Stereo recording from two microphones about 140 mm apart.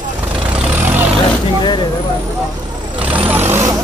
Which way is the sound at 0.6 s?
15° right (ahead or behind).